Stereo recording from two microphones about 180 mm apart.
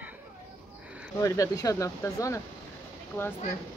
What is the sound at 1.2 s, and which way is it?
Speech, 15° left (ahead or behind).